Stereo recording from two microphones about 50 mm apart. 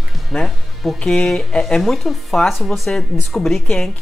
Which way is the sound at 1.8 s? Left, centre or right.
Centre.